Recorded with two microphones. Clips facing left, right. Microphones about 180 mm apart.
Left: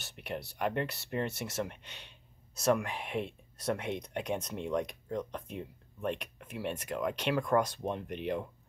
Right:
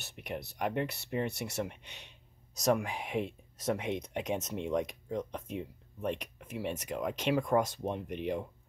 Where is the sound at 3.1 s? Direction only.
10° right (ahead or behind).